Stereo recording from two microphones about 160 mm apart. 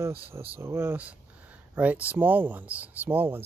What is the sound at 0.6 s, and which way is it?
Speech, 15° right (ahead or behind).